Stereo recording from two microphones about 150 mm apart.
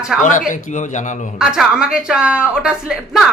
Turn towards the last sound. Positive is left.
turn(degrees=0)  # may be behind; listen again after turning